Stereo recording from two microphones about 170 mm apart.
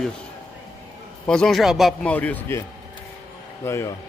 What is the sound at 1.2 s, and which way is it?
Speech, 5° left (ahead or behind).